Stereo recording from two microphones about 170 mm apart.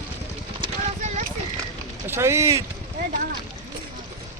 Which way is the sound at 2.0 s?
15° right (ahead or behind).